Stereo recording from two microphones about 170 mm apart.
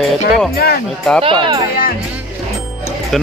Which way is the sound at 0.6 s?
70° left (ahead or behind).